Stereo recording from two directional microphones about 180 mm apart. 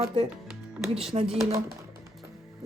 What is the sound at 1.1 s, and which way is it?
Speech, 35° right (ahead or behind).